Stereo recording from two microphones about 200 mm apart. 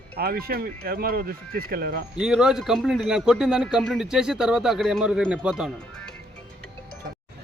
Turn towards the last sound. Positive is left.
turn(degrees=-5)  # may be behind; listen again after turning